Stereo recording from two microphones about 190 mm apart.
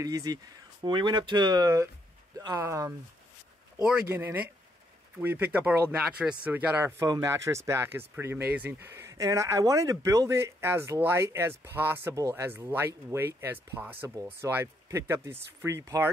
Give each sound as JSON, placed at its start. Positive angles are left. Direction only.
{"t": 0.0, "sound": "speech", "side_deg": -20}
{"t": 3.7, "sound": "speech", "side_deg": -5}